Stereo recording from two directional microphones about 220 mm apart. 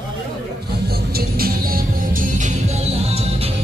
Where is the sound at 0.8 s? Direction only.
45° right (ahead or behind).